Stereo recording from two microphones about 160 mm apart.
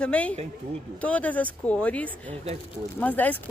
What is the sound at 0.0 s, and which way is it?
Speech, 10° left (ahead or behind).